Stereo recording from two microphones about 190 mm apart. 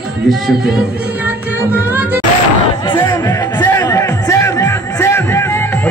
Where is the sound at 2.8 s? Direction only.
25° left (ahead or behind).